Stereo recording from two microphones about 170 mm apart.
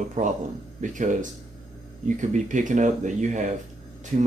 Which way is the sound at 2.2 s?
45° right (ahead or behind).